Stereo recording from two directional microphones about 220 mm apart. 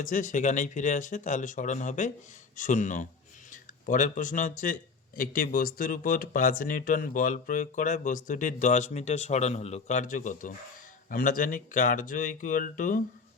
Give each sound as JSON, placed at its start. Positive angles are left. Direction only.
{"t": 0.0, "sound": "speech", "side_deg": 35}